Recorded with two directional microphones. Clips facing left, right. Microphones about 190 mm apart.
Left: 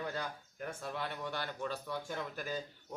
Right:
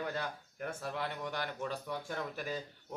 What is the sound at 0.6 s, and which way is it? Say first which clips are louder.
A man's voice: right 2 dB; 10° right (ahead or behind).